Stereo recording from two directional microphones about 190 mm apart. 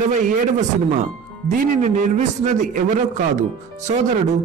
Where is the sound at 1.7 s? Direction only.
40° right (ahead or behind).